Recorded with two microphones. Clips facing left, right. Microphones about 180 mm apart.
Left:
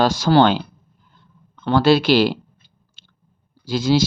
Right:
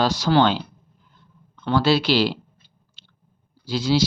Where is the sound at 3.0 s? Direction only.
45° left (ahead or behind).